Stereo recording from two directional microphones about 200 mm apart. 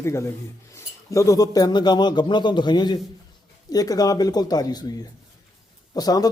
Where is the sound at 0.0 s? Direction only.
15° left (ahead or behind).